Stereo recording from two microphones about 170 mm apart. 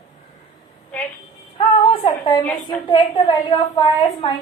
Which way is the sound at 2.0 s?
25° left (ahead or behind).